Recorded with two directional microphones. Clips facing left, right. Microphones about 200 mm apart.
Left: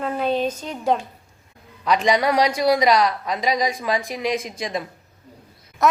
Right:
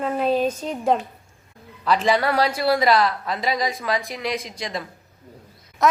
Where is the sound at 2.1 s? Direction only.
15° left (ahead or behind).